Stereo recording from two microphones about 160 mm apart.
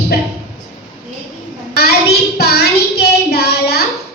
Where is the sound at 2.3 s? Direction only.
80° left.